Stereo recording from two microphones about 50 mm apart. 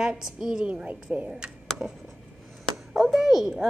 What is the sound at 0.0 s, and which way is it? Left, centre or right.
A woman's voice, centre.